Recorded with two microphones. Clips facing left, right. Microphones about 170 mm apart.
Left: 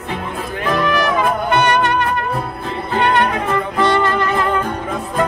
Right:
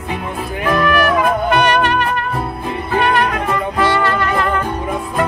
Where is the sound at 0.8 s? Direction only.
25° left (ahead or behind).